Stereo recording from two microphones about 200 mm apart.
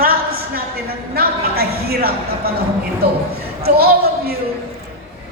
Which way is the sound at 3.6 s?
50° right (ahead or behind).